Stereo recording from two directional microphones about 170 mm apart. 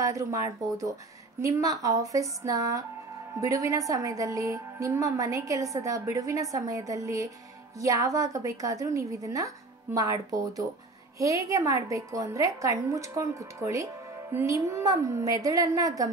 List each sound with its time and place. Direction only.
0.0 s a woman's voice: 20° right (ahead or behind)